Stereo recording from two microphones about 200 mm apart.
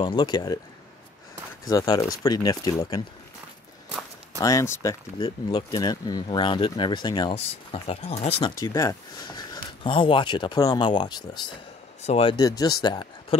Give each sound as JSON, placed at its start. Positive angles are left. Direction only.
{"t": 0.0, "sound": "speech", "side_deg": 25}
{"t": 1.6, "sound": "speech", "side_deg": 20}
{"t": 4.4, "sound": "speech", "side_deg": 15}
{"t": 8.5, "sound": "speech", "side_deg": 15}